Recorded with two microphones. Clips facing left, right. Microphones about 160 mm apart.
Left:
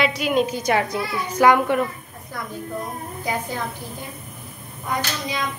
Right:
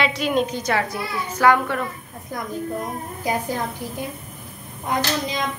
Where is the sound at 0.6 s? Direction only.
15° left (ahead or behind).